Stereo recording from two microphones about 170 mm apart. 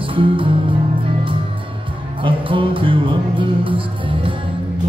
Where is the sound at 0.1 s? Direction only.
30° right (ahead or behind).